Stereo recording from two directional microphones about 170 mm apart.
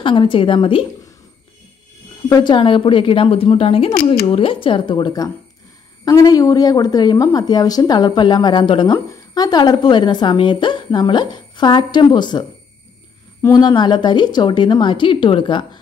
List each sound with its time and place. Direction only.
0.0 s a woman's voice: 30° left (ahead or behind)
2.2 s a woman's voice: 25° left (ahead or behind)